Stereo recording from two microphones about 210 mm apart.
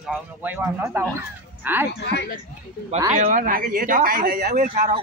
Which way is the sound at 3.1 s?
40° right (ahead or behind).